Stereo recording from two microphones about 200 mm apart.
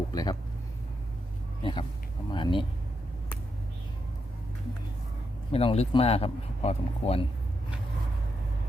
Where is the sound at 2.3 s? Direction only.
25° left (ahead or behind).